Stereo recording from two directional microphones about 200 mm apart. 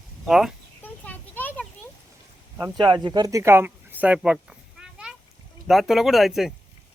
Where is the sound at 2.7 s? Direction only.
20° right (ahead or behind); by 4.3 s 5° right (ahead or behind).